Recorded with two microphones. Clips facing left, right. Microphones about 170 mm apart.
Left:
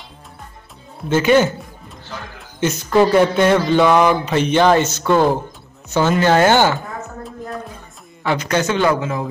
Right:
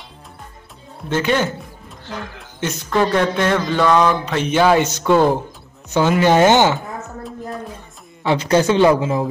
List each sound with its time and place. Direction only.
1.0 s speech: 5° left (ahead or behind)
2.6 s speech: 5° left (ahead or behind); by 6.8 s 20° right (ahead or behind)
8.2 s a man's voice: 25° right (ahead or behind)